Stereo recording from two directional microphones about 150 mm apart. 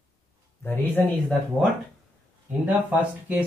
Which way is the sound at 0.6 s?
15° left (ahead or behind).